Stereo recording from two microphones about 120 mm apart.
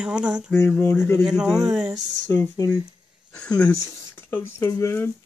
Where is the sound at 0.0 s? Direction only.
10° right (ahead or behind).